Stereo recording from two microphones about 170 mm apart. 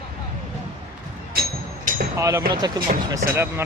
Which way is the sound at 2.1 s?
15° right (ahead or behind).